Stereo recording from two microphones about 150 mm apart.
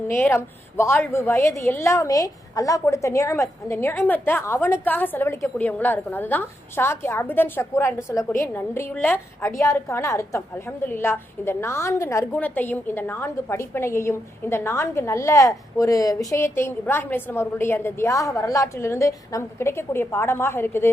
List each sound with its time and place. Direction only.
0.1 s a woman's voice: 15° left (ahead or behind)